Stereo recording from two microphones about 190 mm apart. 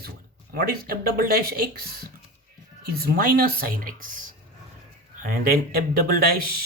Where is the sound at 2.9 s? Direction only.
50° right (ahead or behind).